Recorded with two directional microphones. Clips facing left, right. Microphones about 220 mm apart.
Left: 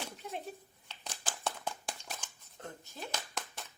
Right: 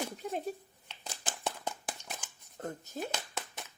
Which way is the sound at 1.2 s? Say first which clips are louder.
Right 1 dB; 20° right (ahead or behind).